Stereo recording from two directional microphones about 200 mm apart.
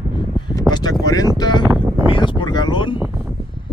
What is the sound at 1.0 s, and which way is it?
Speech, 20° left (ahead or behind).